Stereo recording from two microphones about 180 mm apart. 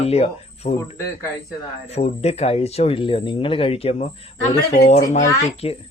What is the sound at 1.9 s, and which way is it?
Speech, 35° left (ahead or behind).